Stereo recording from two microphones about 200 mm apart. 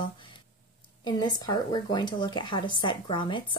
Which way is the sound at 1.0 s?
20° left (ahead or behind).